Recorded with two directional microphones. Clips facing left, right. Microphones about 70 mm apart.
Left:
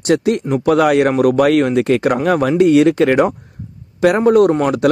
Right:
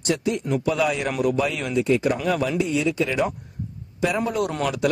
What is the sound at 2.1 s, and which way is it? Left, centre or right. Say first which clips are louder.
Speech: left 8 dB; left.